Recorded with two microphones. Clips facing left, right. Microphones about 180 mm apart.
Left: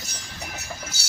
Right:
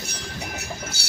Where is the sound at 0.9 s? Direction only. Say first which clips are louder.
Right 4 dB; 60° right (ahead or behind).